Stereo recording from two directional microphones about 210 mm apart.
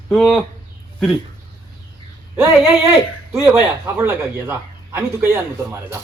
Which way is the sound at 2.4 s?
10° right (ahead or behind).